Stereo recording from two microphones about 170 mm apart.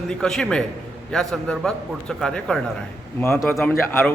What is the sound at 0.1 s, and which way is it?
A man's voice, 5° left (ahead or behind).